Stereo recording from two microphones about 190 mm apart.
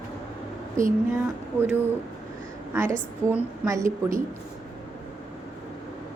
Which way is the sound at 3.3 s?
15° right (ahead or behind).